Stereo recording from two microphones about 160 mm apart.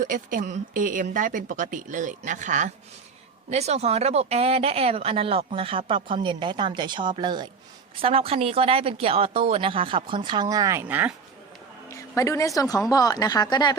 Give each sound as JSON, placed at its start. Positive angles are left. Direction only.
{"t": 0.0, "sound": "speech", "side_deg": -55}
{"t": 11.9, "sound": "speech", "side_deg": 20}